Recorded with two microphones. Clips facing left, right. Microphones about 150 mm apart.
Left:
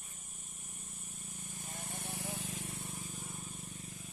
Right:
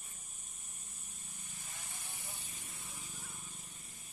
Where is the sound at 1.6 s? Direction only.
50° left (ahead or behind).